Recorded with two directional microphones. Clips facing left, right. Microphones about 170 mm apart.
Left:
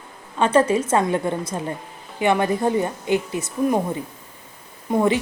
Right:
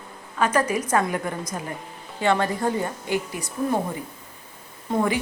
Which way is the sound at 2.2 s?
15° left (ahead or behind).